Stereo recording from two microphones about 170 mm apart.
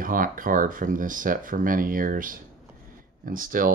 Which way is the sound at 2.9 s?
55° right (ahead or behind).